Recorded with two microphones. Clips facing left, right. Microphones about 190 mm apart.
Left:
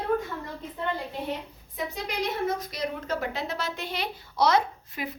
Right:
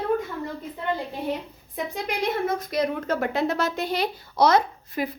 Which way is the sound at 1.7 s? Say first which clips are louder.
Right 3 dB; 55° right (ahead or behind).